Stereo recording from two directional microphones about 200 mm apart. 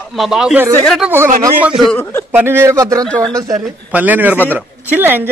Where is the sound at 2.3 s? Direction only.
10° right (ahead or behind).